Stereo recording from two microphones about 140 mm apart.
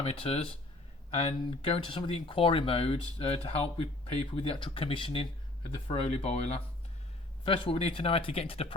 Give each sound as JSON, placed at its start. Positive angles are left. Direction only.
{"t": 0.0, "sound": "speech", "side_deg": 45}